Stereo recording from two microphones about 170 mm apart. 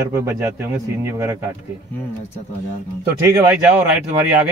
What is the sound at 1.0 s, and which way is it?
Speech, 15° right (ahead or behind).